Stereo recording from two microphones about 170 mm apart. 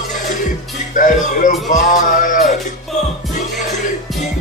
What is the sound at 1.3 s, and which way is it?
Music, 50° left (ahead or behind).